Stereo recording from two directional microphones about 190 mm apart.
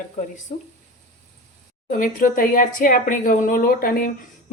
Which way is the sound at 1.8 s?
45° left (ahead or behind).